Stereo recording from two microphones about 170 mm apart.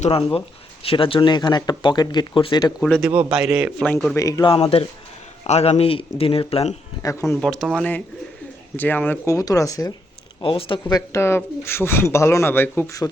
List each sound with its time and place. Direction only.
0.0 s speech: 35° left (ahead or behind)
2.8 s a man's voice: 5° left (ahead or behind)
3.1 s a man's voice: 5° right (ahead or behind)
3.8 s speech: 10° left (ahead or behind); by 6.7 s 35° left (ahead or behind)
7.0 s speech: 20° left (ahead or behind)
7.3 s a man's voice: centre (ahead or behind); by 9.9 s 20° left (ahead or behind)
10.4 s speech: 30° left (ahead or behind); by 13.0 s 10° left (ahead or behind)